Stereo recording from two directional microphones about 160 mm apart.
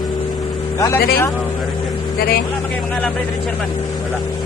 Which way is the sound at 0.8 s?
15° left (ahead or behind).